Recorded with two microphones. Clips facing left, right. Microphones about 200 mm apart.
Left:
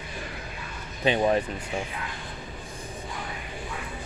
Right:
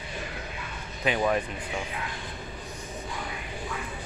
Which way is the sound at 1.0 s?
25° left (ahead or behind).